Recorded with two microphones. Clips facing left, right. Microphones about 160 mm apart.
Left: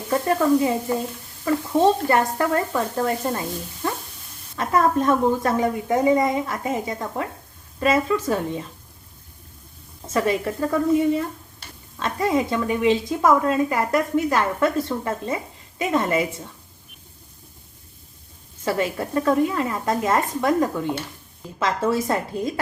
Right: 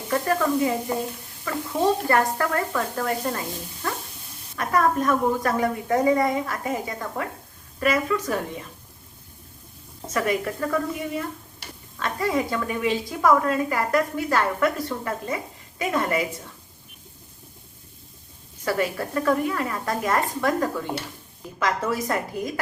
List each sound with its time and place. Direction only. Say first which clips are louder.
0.1 s sizzle: left 4 dB; 25° left (ahead or behind)
1.5 s a woman's voice: left 5 dB; 20° left (ahead or behind)
3.8 s dog: left 3 dB; 20° left (ahead or behind)
4.5 s a woman's voice: left 2 dB; 25° left (ahead or behind)
10.1 s a woman's voice: left 3 dB; 25° left (ahead or behind)
18.6 s a woman's voice: left 1 dB; 25° left (ahead or behind)